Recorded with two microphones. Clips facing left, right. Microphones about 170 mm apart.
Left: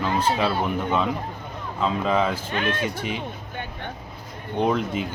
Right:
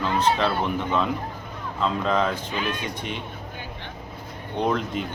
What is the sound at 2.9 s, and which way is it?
Speech, 5° left (ahead or behind).